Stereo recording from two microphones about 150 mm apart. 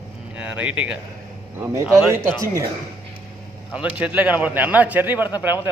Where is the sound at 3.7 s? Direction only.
10° right (ahead or behind).